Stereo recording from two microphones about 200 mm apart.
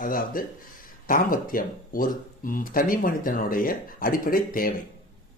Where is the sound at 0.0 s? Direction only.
45° left (ahead or behind).